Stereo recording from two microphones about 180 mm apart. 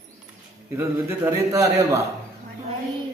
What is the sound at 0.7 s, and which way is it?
A man's voice, 10° right (ahead or behind).